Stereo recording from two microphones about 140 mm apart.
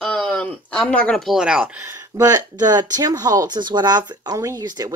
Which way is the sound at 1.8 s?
20° right (ahead or behind).